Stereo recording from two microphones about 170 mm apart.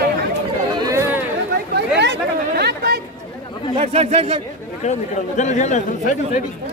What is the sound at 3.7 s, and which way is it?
Speech, 40° right (ahead or behind).